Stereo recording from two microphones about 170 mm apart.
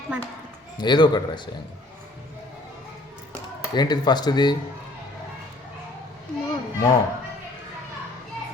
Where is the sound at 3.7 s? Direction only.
25° left (ahead or behind).